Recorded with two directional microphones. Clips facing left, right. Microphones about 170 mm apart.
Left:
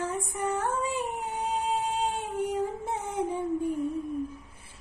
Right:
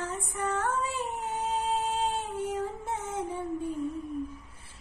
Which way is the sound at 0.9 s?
15° left (ahead or behind).